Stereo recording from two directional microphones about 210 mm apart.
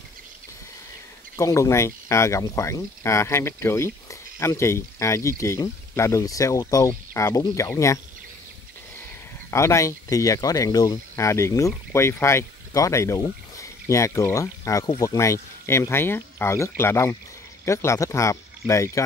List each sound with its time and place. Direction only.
1.3 s speech: 15° left (ahead or behind)
9.5 s speech: 15° left (ahead or behind)